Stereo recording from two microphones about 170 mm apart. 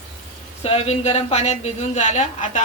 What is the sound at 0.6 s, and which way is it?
A woman's voice, 35° left (ahead or behind).